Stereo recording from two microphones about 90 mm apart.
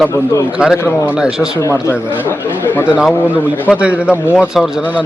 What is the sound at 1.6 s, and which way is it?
Speech, 35° left (ahead or behind).